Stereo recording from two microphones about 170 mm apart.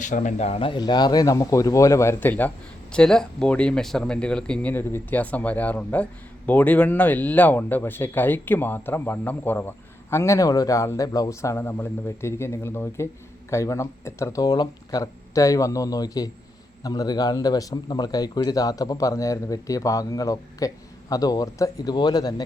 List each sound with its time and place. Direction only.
0.0 s a man's voice: 50° left (ahead or behind); by 22.4 s 25° left (ahead or behind)